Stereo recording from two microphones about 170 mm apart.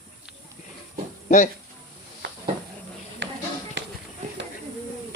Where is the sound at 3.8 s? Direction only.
90° right.